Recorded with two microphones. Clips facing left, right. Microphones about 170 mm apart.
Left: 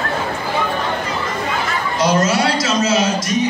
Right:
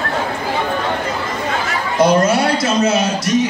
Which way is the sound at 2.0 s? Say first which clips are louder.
Right 3 dB; 55° right (ahead or behind).